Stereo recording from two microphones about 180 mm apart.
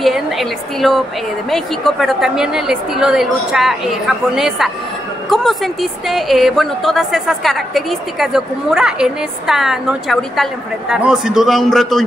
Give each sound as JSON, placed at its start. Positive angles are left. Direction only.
{"t": 0.0, "sound": "a woman's voice", "side_deg": 0}